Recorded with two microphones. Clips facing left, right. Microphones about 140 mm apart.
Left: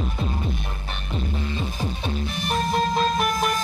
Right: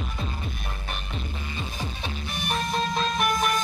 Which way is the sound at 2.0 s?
35° left (ahead or behind).